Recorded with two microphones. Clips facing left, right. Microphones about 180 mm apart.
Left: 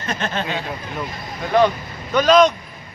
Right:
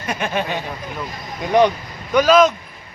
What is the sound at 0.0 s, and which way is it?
Speech, 10° right (ahead or behind).